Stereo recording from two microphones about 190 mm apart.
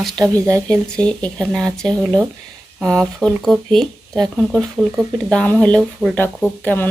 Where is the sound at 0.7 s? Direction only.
5° left (ahead or behind).